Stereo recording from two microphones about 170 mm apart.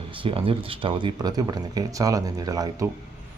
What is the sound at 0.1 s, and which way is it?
Speech, 30° right (ahead or behind).